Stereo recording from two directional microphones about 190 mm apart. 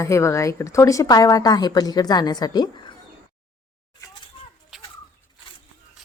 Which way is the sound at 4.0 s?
25° left (ahead or behind).